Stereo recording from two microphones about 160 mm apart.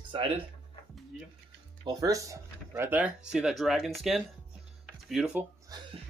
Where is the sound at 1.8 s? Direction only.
20° right (ahead or behind); by 5.5 s 5° right (ahead or behind).